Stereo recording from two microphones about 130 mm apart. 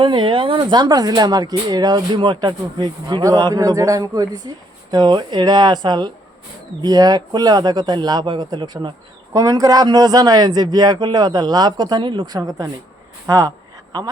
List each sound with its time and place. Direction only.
0.0 s speech: 40° right (ahead or behind); by 13.5 s 25° right (ahead or behind)